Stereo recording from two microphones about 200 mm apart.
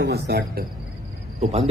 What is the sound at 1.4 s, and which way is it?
Speech, 30° right (ahead or behind).